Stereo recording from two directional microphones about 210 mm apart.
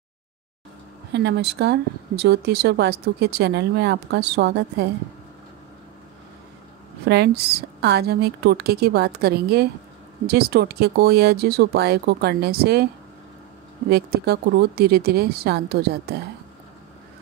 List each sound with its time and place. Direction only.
1.1 s speech: 55° right (ahead or behind)
7.1 s speech: 50° right (ahead or behind)
13.8 s speech: 50° right (ahead or behind)